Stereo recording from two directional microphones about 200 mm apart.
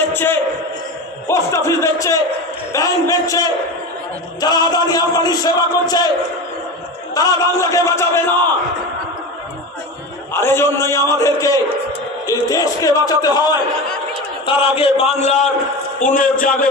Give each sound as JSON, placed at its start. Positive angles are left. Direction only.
{"t": 0.1, "sound": "a sound", "side_deg": 10}
{"t": 1.3, "sound": "a man's voice", "side_deg": 15}
{"t": 4.4, "sound": "music", "side_deg": 20}
{"t": 7.1, "sound": "speech", "side_deg": 15}
{"t": 10.3, "sound": "speech", "side_deg": 10}
{"t": 14.4, "sound": "music", "side_deg": 25}
{"t": 15.2, "sound": "a man's voice", "side_deg": 35}